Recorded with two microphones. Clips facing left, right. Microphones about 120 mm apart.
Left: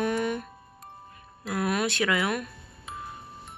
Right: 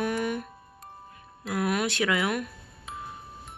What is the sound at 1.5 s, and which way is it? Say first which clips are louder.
Speech: even; 15° right (ahead or behind).